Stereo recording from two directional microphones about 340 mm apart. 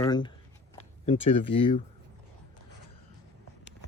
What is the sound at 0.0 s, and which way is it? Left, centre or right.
Speech, centre.